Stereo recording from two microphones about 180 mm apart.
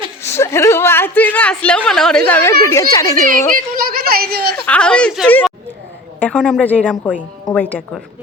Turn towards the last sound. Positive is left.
turn(degrees=10)  # may be behind; listen again after turning